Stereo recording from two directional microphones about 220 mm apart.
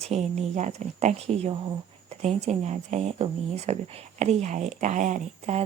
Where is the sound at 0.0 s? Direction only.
30° right (ahead or behind).